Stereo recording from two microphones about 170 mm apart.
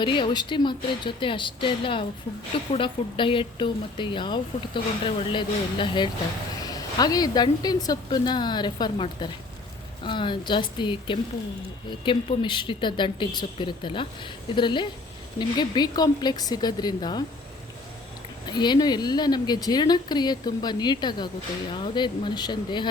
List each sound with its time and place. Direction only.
0.0 s speech: 30° left (ahead or behind)
18.4 s speech: 25° left (ahead or behind)